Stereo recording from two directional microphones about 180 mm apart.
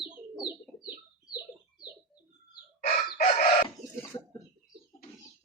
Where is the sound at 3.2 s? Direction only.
50° left (ahead or behind).